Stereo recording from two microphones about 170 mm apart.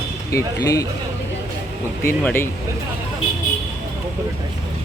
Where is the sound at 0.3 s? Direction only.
20° left (ahead or behind).